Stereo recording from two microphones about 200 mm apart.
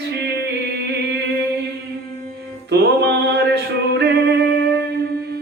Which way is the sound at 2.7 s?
60° right (ahead or behind).